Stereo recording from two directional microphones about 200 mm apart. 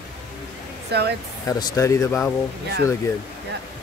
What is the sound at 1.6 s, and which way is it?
Speech, 15° left (ahead or behind).